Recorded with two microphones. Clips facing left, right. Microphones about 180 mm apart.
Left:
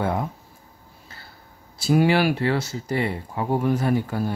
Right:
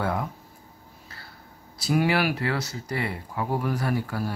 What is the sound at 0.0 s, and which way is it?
Speech, 25° left (ahead or behind).